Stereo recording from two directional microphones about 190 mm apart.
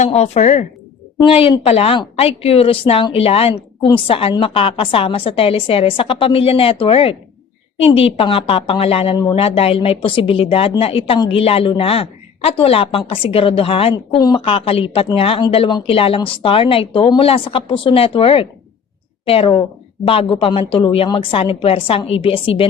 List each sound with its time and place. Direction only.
0.0 s a woman's voice: 35° left (ahead or behind)